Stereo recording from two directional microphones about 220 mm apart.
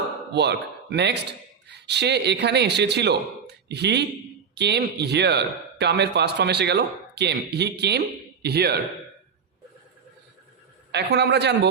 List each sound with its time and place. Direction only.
0.3 s a man's voice: 50° right (ahead or behind)
10.9 s a man's voice: 50° right (ahead or behind)